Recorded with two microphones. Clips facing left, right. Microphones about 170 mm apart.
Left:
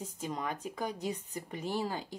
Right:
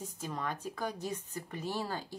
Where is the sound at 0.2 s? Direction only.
15° left (ahead or behind).